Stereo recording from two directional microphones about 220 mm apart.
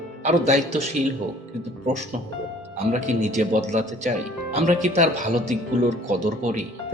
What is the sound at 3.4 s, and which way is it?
Speech, 30° right (ahead or behind).